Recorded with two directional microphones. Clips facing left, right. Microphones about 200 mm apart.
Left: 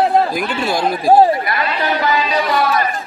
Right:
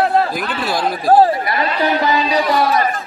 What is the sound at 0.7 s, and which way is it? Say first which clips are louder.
Speech: left 1 dB; centre (ahead or behind).